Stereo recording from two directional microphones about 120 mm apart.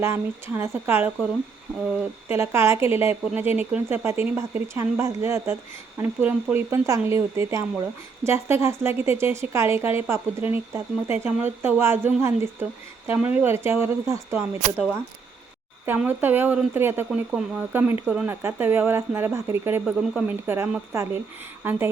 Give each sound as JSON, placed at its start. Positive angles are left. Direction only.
{"t": 0.0, "sound": "a woman's voice", "side_deg": -20}
{"t": 2.2, "sound": "a woman's voice", "side_deg": -20}
{"t": 16.0, "sound": "speech", "side_deg": -15}
{"t": 18.0, "sound": "speech", "side_deg": -5}
{"t": 18.3, "sound": "a woman's voice", "side_deg": -20}
{"t": 19.8, "sound": "speech", "side_deg": -10}